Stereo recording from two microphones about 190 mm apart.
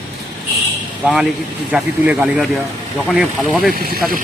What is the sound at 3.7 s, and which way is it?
Speech, 50° right (ahead or behind).